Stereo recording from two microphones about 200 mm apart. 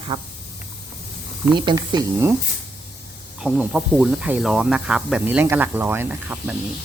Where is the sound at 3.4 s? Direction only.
5° right (ahead or behind).